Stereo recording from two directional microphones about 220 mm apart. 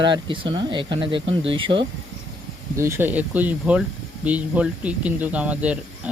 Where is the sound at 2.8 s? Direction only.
10° right (ahead or behind).